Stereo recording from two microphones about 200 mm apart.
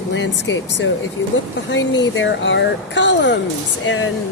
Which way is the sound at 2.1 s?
65° left (ahead or behind).